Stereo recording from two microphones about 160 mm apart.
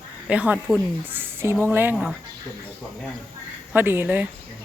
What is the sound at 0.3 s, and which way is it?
A woman's voice, 10° right (ahead or behind).